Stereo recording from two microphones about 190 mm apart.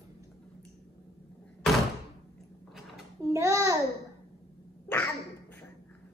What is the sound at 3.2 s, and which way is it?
Child singing, 15° right (ahead or behind).